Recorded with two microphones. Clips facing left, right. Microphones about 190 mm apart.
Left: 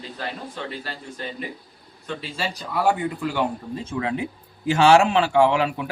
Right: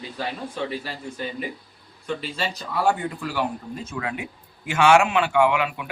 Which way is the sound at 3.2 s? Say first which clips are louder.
Left 1 dB; 25° left (ahead or behind).